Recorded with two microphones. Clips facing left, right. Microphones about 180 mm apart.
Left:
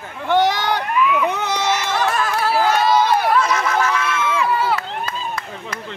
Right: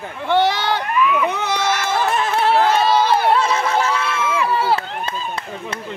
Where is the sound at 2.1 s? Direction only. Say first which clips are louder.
Right 2 dB; 25° right (ahead or behind).